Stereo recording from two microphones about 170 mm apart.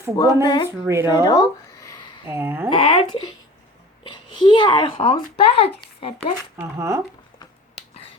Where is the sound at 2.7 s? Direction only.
30° left (ahead or behind).